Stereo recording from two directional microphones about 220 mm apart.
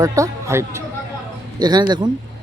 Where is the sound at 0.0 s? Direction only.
15° right (ahead or behind).